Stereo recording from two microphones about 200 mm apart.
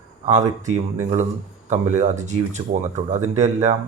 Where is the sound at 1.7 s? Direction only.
35° right (ahead or behind).